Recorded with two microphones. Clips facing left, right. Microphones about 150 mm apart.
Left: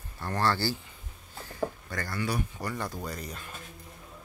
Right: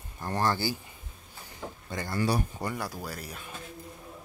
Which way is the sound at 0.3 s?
15° right (ahead or behind).